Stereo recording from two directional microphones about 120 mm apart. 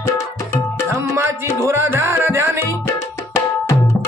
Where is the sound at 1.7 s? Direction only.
20° right (ahead or behind).